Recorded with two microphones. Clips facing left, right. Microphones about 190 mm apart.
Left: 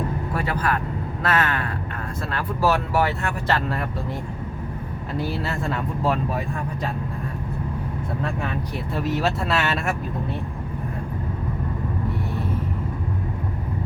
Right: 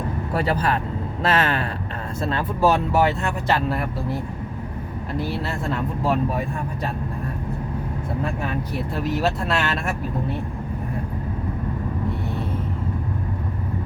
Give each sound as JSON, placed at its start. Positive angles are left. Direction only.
{"t": 0.3, "sound": "speech", "side_deg": -30}
{"t": 9.2, "sound": "speech", "side_deg": 0}